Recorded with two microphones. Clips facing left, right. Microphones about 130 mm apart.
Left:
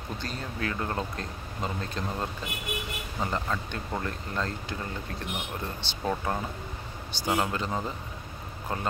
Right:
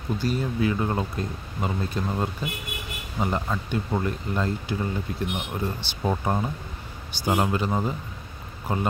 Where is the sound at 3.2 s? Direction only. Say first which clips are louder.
Right 4 dB; 15° right (ahead or behind).